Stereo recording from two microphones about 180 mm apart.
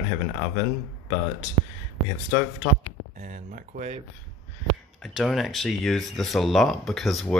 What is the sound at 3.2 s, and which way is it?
Speech, 45° right (ahead or behind).